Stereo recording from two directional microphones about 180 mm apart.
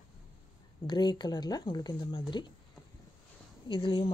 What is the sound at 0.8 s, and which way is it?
Speech, 25° left (ahead or behind).